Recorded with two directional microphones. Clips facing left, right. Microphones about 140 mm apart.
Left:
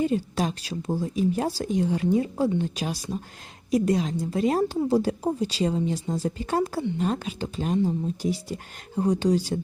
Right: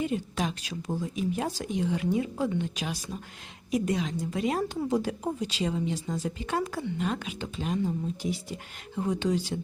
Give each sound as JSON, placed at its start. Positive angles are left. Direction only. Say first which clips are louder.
{"t": 0.0, "sound": "a woman's voice", "louder": "left 5 dB", "side_deg": 35}